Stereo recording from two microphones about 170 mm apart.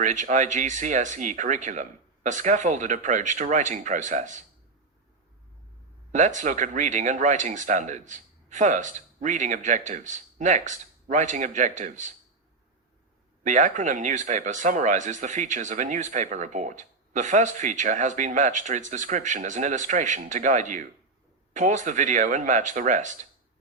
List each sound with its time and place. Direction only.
0.0 s speech: 45° right (ahead or behind)
6.1 s speech: 45° right (ahead or behind)
13.4 s speech: 45° right (ahead or behind)